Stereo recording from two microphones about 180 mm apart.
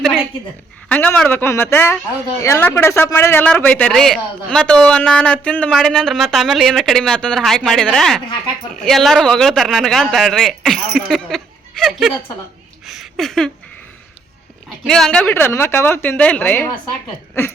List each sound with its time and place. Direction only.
0.9 s a man's voice: 5° left (ahead or behind)
12.8 s a sound: centre (ahead or behind)
14.8 s a man's voice: centre (ahead or behind)